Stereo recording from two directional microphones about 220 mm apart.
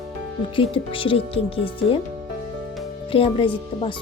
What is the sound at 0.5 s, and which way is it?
A woman's voice, 25° left (ahead or behind).